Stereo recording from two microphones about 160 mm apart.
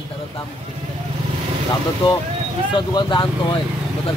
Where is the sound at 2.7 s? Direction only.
30° left (ahead or behind).